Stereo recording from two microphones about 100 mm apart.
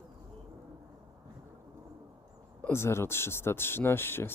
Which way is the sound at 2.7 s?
25° left (ahead or behind).